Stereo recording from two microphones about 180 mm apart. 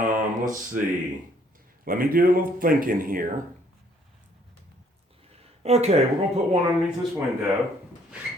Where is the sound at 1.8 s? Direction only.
50° right (ahead or behind).